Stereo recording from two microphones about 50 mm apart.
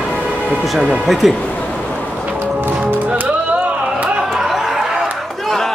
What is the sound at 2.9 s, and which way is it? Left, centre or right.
Music, right.